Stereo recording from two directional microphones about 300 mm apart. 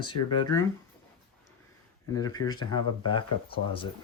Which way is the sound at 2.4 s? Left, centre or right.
Left.